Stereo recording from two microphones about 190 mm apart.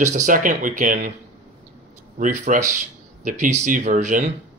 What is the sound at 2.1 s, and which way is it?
Speech, 45° right (ahead or behind).